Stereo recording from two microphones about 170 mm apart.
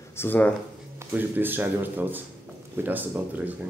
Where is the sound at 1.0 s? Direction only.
10° right (ahead or behind).